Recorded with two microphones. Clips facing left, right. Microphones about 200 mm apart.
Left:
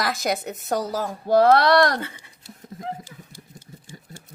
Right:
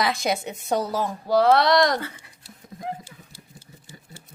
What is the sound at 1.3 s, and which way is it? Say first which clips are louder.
Speech: left 2 dB; 55° left (ahead or behind).